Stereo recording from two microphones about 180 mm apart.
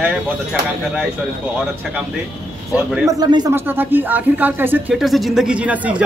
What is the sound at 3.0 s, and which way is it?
A woman's voice, 20° right (ahead or behind).